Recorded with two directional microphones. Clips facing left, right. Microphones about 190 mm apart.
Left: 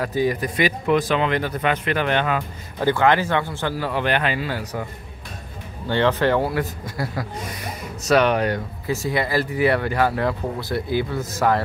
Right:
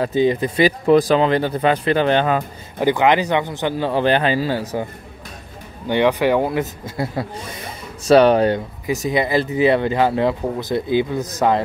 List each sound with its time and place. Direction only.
0.0 s speech: 25° right (ahead or behind)
2.8 s speech: 15° right (ahead or behind)
5.9 s speech: 15° right (ahead or behind)